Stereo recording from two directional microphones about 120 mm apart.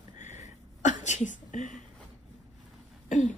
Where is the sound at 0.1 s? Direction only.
90° left.